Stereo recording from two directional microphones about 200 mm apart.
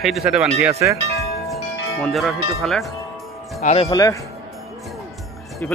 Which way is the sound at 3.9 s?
20° left (ahead or behind).